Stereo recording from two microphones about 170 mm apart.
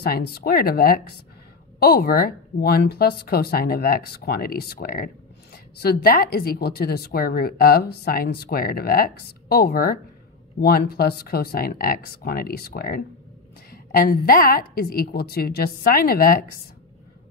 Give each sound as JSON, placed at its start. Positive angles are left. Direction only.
{"t": 0.0, "sound": "speech", "side_deg": 70}